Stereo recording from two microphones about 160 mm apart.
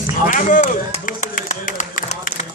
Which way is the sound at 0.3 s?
55° left (ahead or behind).